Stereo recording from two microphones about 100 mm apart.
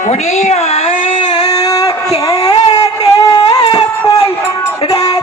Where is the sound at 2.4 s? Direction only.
40° left (ahead or behind).